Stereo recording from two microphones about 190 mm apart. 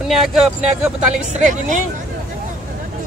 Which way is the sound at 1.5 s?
40° right (ahead or behind).